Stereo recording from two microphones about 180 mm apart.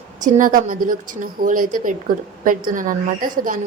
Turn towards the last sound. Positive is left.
turn(degrees=-50)  # may be behind; listen again after turning